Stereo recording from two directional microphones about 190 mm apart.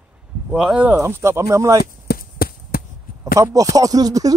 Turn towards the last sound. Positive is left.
turn(degrees=-20)  # may be behind; listen again after turning